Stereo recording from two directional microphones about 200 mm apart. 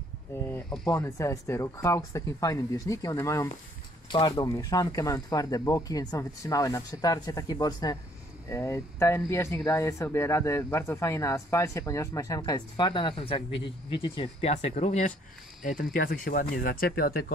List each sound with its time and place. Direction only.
0.3 s speech: 10° left (ahead or behind); by 15.1 s 35° left (ahead or behind)
15.8 s speech: 45° left (ahead or behind)